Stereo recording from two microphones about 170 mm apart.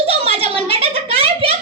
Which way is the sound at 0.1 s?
35° right (ahead or behind).